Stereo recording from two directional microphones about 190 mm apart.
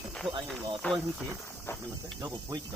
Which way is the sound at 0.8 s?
5° left (ahead or behind).